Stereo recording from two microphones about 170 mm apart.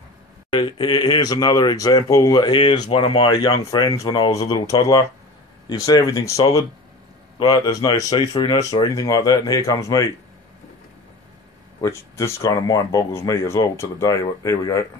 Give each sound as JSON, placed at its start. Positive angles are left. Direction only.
{"t": 0.5, "sound": "speech", "side_deg": 25}
{"t": 11.8, "sound": "speech", "side_deg": 15}